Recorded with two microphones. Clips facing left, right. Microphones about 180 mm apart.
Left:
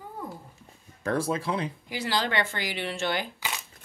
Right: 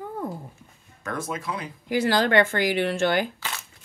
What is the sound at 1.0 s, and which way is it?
Speech, 30° left (ahead or behind).